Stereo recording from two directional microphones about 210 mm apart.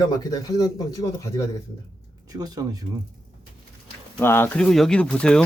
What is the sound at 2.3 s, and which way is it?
Speech, 20° right (ahead or behind).